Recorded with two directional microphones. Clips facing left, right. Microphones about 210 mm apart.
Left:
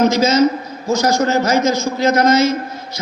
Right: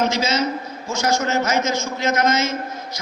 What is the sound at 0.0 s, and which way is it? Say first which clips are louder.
A man's voice: left 8 dB; 40° left (ahead or behind).